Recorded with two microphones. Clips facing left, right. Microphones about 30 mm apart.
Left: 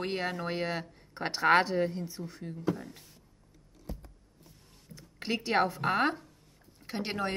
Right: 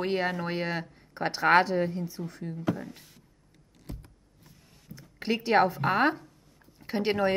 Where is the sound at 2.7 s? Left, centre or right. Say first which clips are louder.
Right 4 dB; centre.